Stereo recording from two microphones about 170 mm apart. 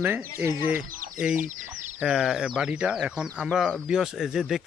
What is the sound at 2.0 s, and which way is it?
Speech, 5° right (ahead or behind).